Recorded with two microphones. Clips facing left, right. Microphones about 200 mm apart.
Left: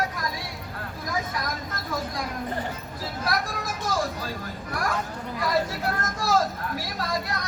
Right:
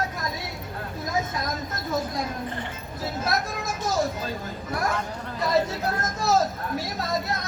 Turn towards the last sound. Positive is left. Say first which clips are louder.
# right 2 dB
turn(degrees=-25)  # may be behind; listen again after turning